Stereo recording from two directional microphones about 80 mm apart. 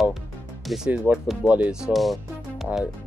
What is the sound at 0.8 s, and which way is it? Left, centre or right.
Speech, centre.